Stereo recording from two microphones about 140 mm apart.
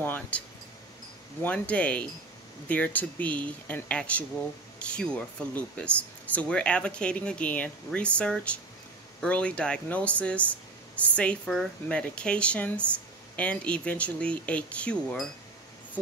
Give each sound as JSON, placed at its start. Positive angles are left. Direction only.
{"t": 0.0, "sound": "speech", "side_deg": 15}
{"t": 1.4, "sound": "speech", "side_deg": 10}